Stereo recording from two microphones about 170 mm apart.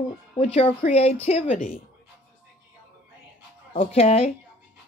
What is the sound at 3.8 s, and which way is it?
Speech, 35° left (ahead or behind).